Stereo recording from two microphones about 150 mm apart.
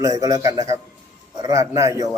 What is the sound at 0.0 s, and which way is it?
Speech, 25° right (ahead or behind).